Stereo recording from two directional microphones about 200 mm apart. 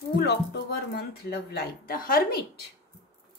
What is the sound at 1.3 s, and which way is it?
A woman's voice, 50° left (ahead or behind).